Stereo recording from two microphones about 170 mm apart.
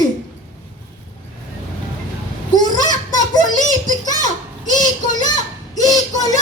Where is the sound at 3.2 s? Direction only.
25° left (ahead or behind).